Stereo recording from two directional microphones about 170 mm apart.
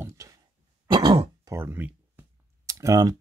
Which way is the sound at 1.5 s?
15° right (ahead or behind).